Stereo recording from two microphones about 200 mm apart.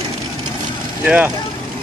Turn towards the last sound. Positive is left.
turn(degrees=-5)  # may be behind; listen again after turning